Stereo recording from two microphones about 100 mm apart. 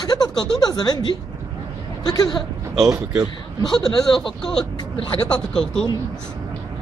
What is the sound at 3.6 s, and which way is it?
Speech, 5° left (ahead or behind).